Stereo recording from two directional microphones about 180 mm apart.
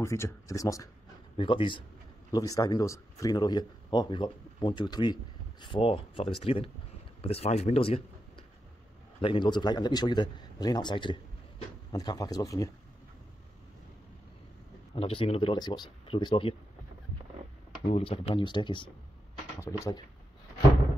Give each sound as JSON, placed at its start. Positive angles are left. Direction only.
{"t": 0.0, "sound": "speech", "side_deg": 15}
{"t": 1.3, "sound": "speech", "side_deg": 30}
{"t": 9.2, "sound": "speech", "side_deg": 25}
{"t": 15.0, "sound": "speech", "side_deg": 30}
{"t": 17.8, "sound": "speech", "side_deg": 35}
{"t": 19.6, "sound": "speech", "side_deg": 15}